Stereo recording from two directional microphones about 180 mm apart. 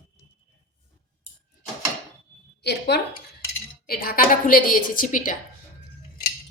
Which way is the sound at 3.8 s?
55° left (ahead or behind).